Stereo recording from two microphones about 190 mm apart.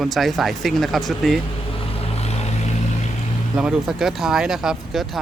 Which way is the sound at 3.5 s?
5° right (ahead or behind).